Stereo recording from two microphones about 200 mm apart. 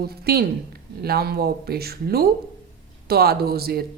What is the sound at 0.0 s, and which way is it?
A woman's voice, 50° right (ahead or behind).